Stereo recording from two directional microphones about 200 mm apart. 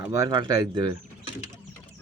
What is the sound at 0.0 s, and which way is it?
Speech, 15° right (ahead or behind).